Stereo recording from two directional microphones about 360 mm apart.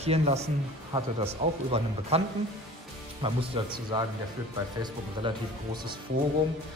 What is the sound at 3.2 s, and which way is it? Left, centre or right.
Speech, centre.